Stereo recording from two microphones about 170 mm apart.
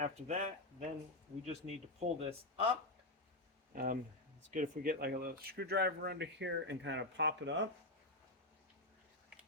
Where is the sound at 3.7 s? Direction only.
55° right (ahead or behind); by 7.6 s 90° right.